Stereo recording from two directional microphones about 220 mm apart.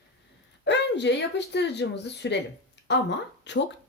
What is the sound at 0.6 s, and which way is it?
A woman's voice, 50° left (ahead or behind).